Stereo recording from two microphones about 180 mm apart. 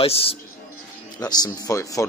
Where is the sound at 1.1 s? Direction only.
20° left (ahead or behind).